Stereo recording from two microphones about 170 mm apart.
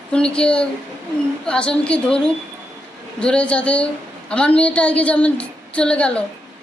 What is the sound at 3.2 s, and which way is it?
A woman's voice, 5° left (ahead or behind).